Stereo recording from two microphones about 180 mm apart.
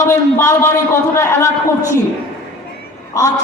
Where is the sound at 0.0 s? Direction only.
15° left (ahead or behind).